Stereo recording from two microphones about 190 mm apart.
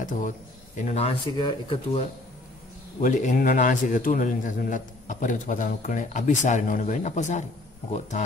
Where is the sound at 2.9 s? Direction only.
40° left (ahead or behind).